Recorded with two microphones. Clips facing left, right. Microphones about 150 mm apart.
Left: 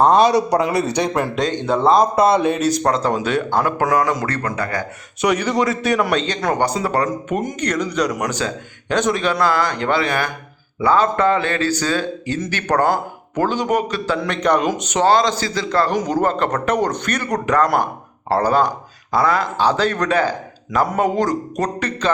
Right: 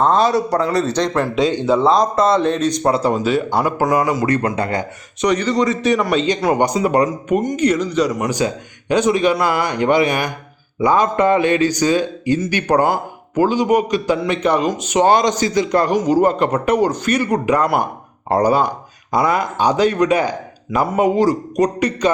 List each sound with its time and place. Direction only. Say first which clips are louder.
0.0 s speech: left 2 dB; 15° left (ahead or behind)
1.6 s speech: left 2 dB; centre (ahead or behind)
2.8 s a man's voice: right 2 dB; 10° right (ahead or behind)
4.3 s speech: right 5 dB; 20° right (ahead or behind)
5.2 s a man's voice: right 1 dB; 10° left (ahead or behind); by 7.3 s 15° right (ahead or behind)
7.3 s a man's voice: right 7 dB; 5° right (ahead or behind)